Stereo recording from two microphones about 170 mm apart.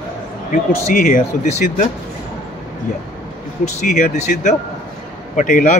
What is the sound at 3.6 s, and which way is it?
Speech, 45° left (ahead or behind).